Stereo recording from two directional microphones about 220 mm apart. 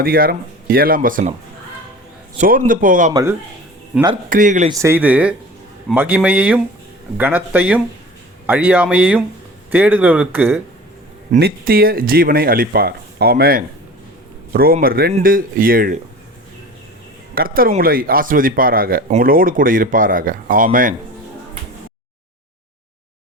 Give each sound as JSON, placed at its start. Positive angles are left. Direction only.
{"t": 0.0, "sound": "speech", "side_deg": -40}
{"t": 2.4, "sound": "speech", "side_deg": -35}
{"t": 3.1, "sound": "speech", "side_deg": -15}
{"t": 3.9, "sound": "speech", "side_deg": -5}
{"t": 4.3, "sound": "speech", "side_deg": -35}
{"t": 4.8, "sound": "speech", "side_deg": -10}
{"t": 11.3, "sound": "speech", "side_deg": -45}
{"t": 17.3, "sound": "speech", "side_deg": -40}